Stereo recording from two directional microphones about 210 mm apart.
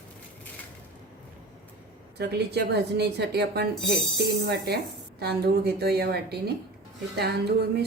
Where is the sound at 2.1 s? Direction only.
50° right (ahead or behind).